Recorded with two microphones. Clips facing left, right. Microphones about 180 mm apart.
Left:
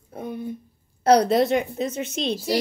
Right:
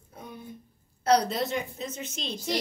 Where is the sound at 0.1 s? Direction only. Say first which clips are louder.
Left 11 dB; 60° left (ahead or behind).